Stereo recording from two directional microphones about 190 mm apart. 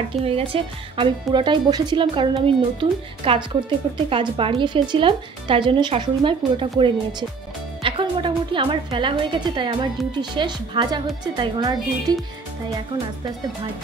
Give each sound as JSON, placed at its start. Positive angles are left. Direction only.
{"t": 0.2, "sound": "speech", "side_deg": -30}